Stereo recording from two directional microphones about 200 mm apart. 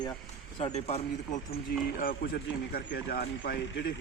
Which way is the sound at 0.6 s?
30° left (ahead or behind).